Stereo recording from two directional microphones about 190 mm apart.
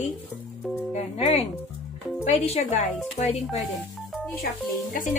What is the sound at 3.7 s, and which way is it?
Music, 5° left (ahead or behind).